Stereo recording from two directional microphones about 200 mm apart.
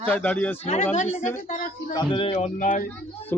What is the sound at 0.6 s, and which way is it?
A woman's voice, 35° left (ahead or behind).